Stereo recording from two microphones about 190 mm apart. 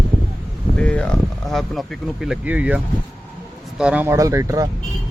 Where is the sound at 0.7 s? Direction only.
5° left (ahead or behind).